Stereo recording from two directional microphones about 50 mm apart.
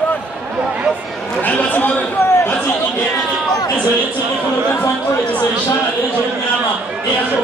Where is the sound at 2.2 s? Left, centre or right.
Left.